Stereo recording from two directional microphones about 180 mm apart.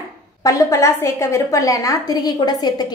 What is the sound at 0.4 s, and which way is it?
A woman's voice, 15° left (ahead or behind).